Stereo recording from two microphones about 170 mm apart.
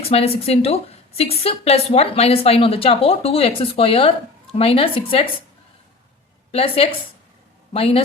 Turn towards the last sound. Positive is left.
turn(degrees=35)  # may be behind; listen again after turning